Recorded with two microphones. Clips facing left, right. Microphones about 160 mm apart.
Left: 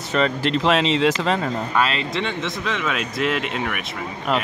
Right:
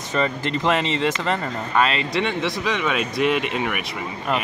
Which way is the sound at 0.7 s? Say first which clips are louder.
Left 3 dB; 90° left.